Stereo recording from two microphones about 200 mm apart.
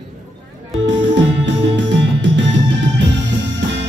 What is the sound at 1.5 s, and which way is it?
Music, 65° right (ahead or behind).